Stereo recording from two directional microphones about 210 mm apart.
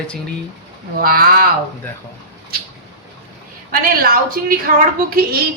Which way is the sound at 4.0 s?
45° right (ahead or behind).